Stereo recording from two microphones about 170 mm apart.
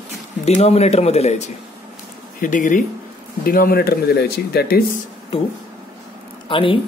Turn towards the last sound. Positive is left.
turn(degrees=30)  # may be behind; listen again after turning